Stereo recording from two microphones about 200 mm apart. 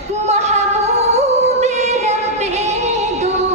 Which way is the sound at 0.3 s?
35° right (ahead or behind).